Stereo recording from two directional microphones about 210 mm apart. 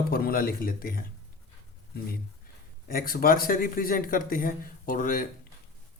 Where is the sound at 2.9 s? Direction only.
45° left (ahead or behind).